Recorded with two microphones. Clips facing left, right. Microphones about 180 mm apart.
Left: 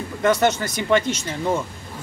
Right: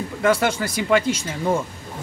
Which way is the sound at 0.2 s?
5° right (ahead or behind).